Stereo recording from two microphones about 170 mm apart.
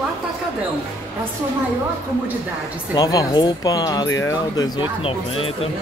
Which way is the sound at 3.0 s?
20° left (ahead or behind).